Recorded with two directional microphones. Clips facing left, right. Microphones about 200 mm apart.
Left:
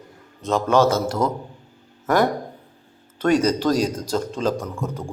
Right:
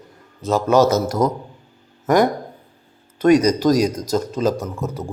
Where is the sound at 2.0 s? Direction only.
15° right (ahead or behind).